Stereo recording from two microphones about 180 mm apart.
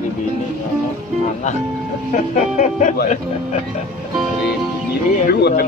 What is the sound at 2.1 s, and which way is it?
Speech, 45° left (ahead or behind).